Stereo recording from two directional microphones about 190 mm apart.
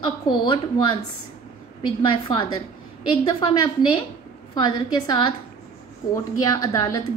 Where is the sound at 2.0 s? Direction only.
25° left (ahead or behind).